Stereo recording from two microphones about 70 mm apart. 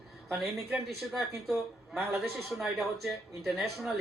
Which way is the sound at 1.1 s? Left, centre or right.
Centre.